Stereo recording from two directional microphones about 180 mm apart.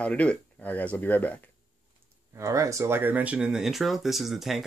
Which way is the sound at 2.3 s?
15° right (ahead or behind).